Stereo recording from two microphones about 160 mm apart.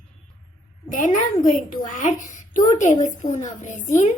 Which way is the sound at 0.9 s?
60° left (ahead or behind).